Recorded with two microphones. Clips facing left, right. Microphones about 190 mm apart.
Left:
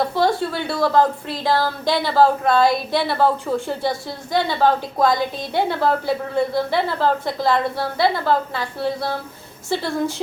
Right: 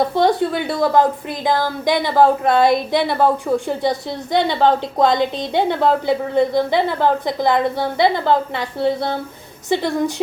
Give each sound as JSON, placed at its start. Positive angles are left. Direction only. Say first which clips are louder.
{"t": 0.0, "sound": "a woman's voice", "louder": "right 3 dB", "side_deg": -20}